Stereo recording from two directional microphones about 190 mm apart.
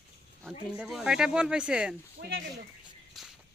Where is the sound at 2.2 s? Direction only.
50° right (ahead or behind).